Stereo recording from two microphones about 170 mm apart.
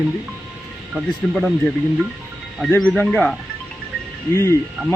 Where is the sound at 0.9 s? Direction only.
Centre (ahead or behind).